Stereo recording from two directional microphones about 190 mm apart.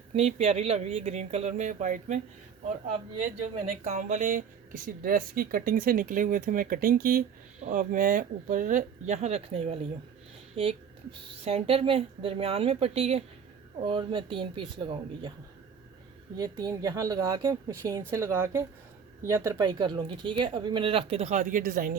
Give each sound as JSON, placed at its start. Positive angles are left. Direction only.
{"t": 0.1, "sound": "speech", "side_deg": -35}
{"t": 3.8, "sound": "speech", "side_deg": -40}
{"t": 16.4, "sound": "a woman's voice", "side_deg": -20}